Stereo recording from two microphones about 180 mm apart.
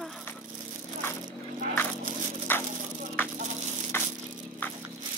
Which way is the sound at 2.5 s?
10° left (ahead or behind).